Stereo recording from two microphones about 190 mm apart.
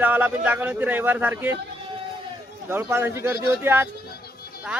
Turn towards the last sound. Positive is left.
turn(degrees=-10)  # may be behind; listen again after turning